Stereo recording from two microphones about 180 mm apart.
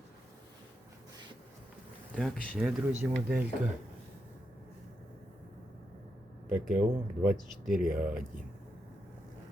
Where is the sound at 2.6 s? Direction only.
5° right (ahead or behind).